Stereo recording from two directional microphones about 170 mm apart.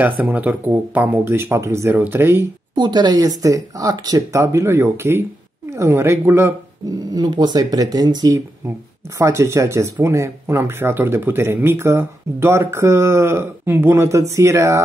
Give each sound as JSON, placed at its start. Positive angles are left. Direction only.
{"t": 0.0, "sound": "speech", "side_deg": -10}
{"t": 2.7, "sound": "speech", "side_deg": -25}